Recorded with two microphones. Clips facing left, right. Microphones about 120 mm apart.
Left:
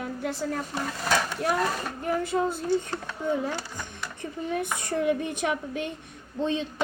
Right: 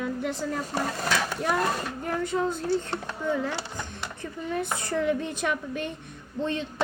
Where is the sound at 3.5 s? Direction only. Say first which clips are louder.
Right 1 dB; 20° right (ahead or behind).